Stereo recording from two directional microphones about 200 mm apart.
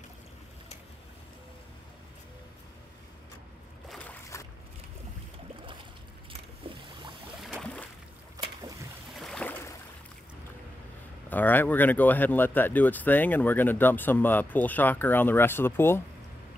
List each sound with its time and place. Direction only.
4.3 s boat: 15° left (ahead or behind)
7.4 s boat: 5° left (ahead or behind)
8.4 s boat: 15° right (ahead or behind)
9.1 s boat: centre (ahead or behind)
11.2 s speech: 10° left (ahead or behind)